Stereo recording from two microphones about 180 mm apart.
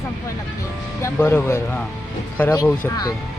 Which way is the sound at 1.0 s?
15° left (ahead or behind).